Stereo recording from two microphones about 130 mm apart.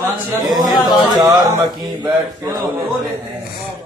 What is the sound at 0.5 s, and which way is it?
Speech, centre (ahead or behind).